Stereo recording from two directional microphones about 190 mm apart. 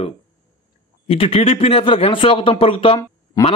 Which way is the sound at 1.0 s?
30° left (ahead or behind).